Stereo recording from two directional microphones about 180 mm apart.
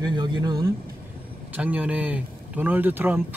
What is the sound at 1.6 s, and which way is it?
Speech, 10° right (ahead or behind).